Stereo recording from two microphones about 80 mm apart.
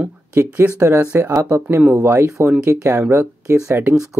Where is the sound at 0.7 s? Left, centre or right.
Right.